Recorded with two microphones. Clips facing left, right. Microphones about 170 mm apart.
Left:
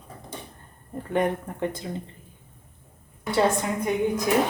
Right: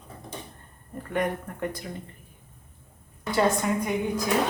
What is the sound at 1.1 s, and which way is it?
Speech, 25° left (ahead or behind).